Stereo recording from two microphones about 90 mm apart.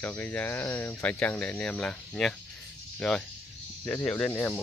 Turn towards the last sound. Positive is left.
turn(degrees=20)  # may be behind; listen again after turning